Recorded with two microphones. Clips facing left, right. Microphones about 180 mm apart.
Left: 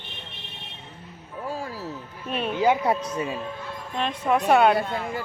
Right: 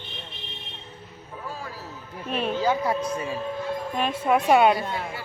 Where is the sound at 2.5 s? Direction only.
15° left (ahead or behind).